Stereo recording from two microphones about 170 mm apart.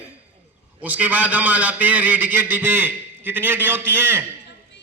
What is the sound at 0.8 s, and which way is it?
A man's voice, 10° right (ahead or behind).